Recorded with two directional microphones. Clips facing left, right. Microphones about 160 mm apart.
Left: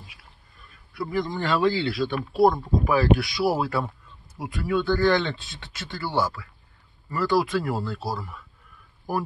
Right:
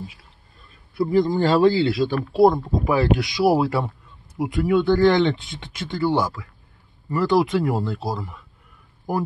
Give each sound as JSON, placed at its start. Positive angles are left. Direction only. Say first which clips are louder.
{"t": 0.9, "sound": "speech", "louder": "right 8 dB", "side_deg": -30}